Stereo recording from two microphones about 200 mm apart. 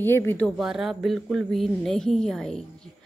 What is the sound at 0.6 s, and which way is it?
Speech, centre (ahead or behind).